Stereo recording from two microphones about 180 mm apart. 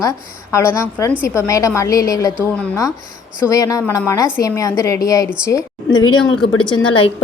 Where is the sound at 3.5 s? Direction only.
20° left (ahead or behind).